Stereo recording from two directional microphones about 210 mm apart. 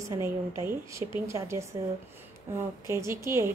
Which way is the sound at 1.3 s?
15° right (ahead or behind).